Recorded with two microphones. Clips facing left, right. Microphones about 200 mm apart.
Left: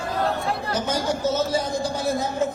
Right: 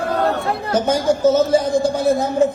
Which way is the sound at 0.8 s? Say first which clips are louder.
Right 9 dB; 50° right (ahead or behind).